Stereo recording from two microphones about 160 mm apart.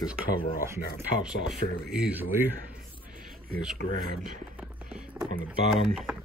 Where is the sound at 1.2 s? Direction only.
5° right (ahead or behind).